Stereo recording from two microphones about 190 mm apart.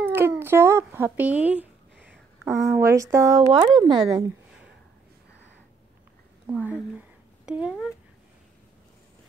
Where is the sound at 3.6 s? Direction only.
20° right (ahead or behind).